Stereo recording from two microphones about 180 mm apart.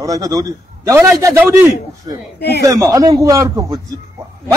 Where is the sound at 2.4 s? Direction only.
65° left (ahead or behind).